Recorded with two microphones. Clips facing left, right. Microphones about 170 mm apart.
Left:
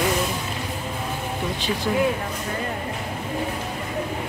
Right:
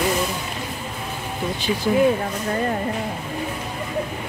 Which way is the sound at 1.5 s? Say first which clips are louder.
Right 5 dB; centre (ahead or behind).